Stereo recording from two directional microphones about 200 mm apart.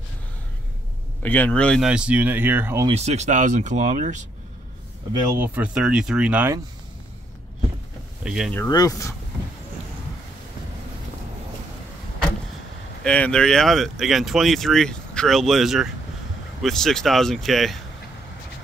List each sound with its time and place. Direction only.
1.2 s speech: 10° left (ahead or behind); by 2.9 s 10° right (ahead or behind)
2.9 s speech: 35° right (ahead or behind)
5.2 s speech: 10° right (ahead or behind)
8.2 s speech: 5° right (ahead or behind)
8.5 s speech: 15° left (ahead or behind)
13.0 s speech: 5° left (ahead or behind)